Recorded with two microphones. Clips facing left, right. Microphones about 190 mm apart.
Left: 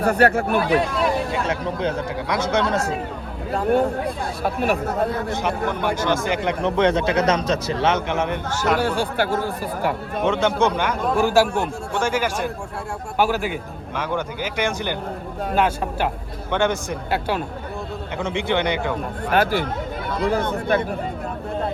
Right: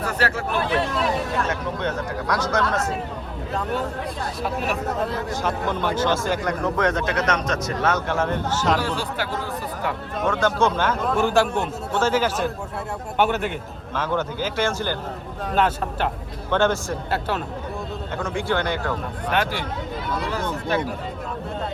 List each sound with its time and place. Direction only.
0.0 s speech: 60° left (ahead or behind)
1.5 s speech: 30° left (ahead or behind)
3.7 s speech: 55° left (ahead or behind)
5.3 s speech: 15° left (ahead or behind)
8.8 s speech: 55° left (ahead or behind)
10.2 s speech: 25° left (ahead or behind)
11.0 s speech: centre (ahead or behind)
13.1 s a man's voice: centre (ahead or behind)
13.9 s speech: 15° left (ahead or behind)
19.3 s speech: 45° left (ahead or behind)